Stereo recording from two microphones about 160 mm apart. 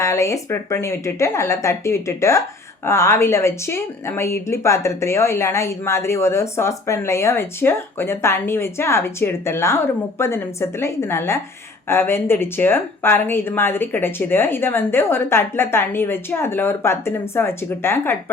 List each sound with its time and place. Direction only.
0.0 s a woman's voice: 20° left (ahead or behind)